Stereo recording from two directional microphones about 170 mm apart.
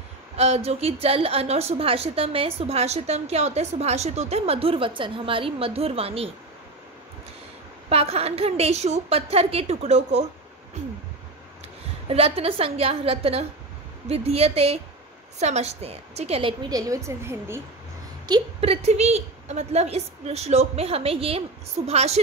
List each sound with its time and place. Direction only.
0.4 s a woman's voice: 35° right (ahead or behind)
7.9 s a woman's voice: 35° right (ahead or behind)
12.1 s a woman's voice: 35° right (ahead or behind); by 17.6 s 15° right (ahead or behind)
18.2 s a woman's voice: 30° right (ahead or behind)